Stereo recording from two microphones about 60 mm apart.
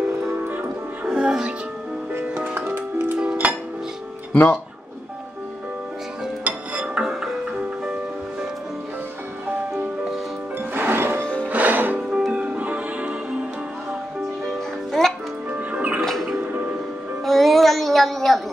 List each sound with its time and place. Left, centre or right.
0.3 s music: right
1.0 s music: centre
4.3 s speech: centre
6.4 s music: right
7.0 s music: centre
10.7 s music: right
11.4 s music: right
14.9 s music: centre
15.5 s music: right
16.0 s music: centre